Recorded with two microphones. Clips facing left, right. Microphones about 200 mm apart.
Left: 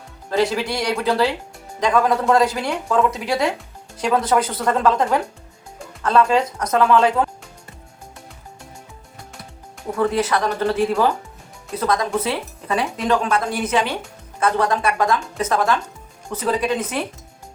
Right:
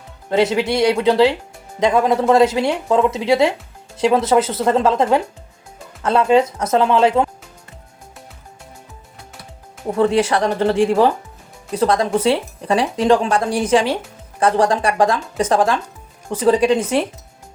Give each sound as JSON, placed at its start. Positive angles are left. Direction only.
{"t": 0.3, "sound": "speech", "side_deg": -20}
{"t": 10.0, "sound": "speech", "side_deg": -30}